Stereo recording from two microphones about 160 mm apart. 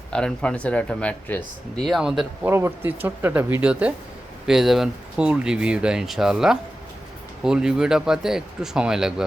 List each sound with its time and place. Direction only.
0.1 s speech: 5° left (ahead or behind)
2.5 s speech: 15° right (ahead or behind)